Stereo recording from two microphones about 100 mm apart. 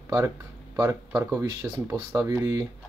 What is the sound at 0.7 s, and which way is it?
Speech, 35° right (ahead or behind).